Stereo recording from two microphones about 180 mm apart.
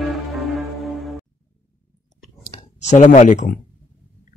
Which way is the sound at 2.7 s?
40° left (ahead or behind).